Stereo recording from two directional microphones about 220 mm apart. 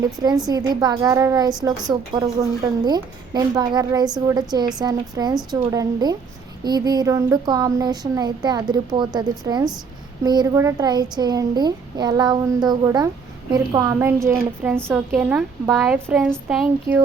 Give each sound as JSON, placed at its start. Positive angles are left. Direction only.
{"t": 0.2, "sound": "speech", "side_deg": -15}